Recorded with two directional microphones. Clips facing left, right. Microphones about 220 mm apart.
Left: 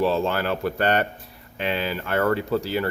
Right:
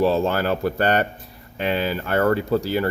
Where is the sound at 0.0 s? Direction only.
40° right (ahead or behind).